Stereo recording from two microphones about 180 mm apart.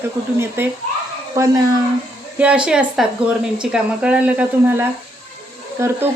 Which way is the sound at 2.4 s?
5° right (ahead or behind).